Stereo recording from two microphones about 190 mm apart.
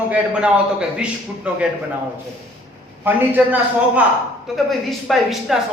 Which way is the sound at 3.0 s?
10° right (ahead or behind).